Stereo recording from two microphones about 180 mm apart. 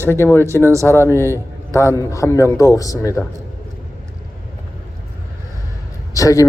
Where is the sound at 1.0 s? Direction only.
15° left (ahead or behind).